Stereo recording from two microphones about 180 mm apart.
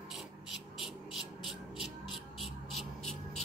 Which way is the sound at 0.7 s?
Centre (ahead or behind).